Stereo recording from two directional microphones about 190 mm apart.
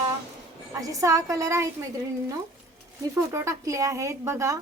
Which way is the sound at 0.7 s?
15° right (ahead or behind).